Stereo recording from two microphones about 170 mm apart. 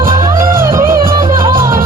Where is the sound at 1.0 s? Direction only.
55° right (ahead or behind).